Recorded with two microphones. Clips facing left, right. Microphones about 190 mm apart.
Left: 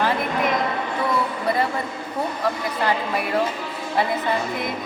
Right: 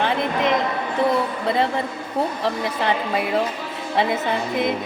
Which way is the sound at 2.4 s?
20° right (ahead or behind).